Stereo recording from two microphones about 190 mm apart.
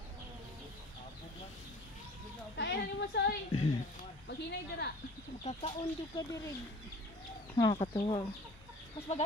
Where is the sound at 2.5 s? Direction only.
60° left (ahead or behind).